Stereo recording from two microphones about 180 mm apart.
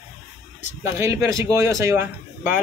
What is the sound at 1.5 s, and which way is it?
Speech, 15° right (ahead or behind).